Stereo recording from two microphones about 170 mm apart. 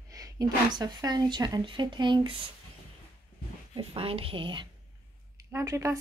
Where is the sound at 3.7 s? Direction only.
35° right (ahead or behind).